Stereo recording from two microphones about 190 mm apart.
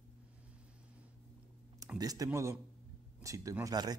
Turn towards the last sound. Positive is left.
turn(degrees=-20)  # may be behind; listen again after turning